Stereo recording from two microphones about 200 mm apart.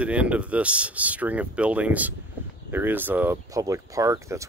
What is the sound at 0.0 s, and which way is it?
Speech, 5° right (ahead or behind).